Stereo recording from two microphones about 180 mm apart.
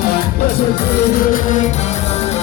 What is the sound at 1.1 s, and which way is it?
Music, 50° left (ahead or behind).